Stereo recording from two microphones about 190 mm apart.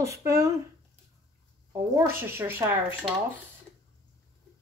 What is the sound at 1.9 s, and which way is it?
Speech, 10° right (ahead or behind).